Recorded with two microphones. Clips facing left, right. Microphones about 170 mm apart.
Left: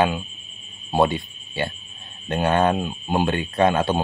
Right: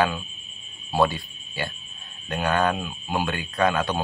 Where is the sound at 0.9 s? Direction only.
20° left (ahead or behind).